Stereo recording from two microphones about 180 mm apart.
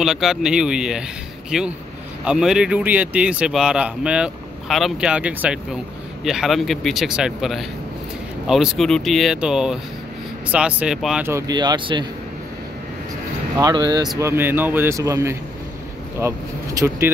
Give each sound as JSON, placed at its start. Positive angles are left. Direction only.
{"t": 0.0, "sound": "speech", "side_deg": 0}
{"t": 11.2, "sound": "speech", "side_deg": -20}
{"t": 13.6, "sound": "speech", "side_deg": -20}